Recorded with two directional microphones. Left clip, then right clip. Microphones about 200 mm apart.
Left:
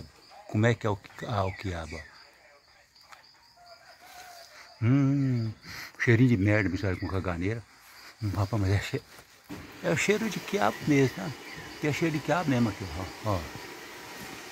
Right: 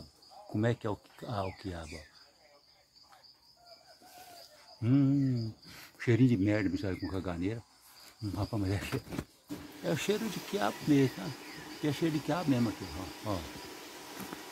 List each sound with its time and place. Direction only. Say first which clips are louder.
0.5 s speech: left 6 dB; 20° left (ahead or behind)
4.8 s cricket: left 2 dB; 5° left (ahead or behind)
5.7 s speech: left 6 dB; 10° left (ahead or behind)